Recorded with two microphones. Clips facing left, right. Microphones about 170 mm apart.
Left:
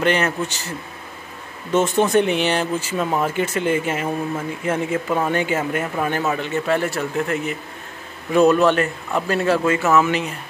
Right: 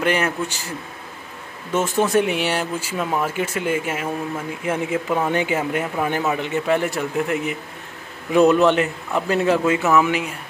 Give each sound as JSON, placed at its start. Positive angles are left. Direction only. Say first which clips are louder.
{"t": 0.0, "sound": "speech", "louder": "left 1 dB", "side_deg": -10}
{"t": 1.7, "sound": "speech", "louder": "left 2 dB", "side_deg": -5}
{"t": 3.1, "sound": "speech", "louder": "left 1 dB", "side_deg": 5}